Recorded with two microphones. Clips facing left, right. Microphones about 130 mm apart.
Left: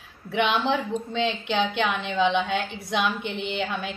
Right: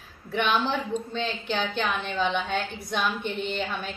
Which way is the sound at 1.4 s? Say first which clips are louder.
Left 3 dB; 15° left (ahead or behind).